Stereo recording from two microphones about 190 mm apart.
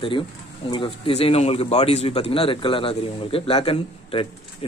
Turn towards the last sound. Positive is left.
turn(degrees=30)  # may be behind; listen again after turning